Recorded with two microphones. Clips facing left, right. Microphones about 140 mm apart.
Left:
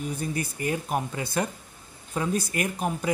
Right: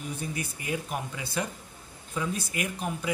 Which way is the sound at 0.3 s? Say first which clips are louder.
Left 5 dB; 45° left (ahead or behind).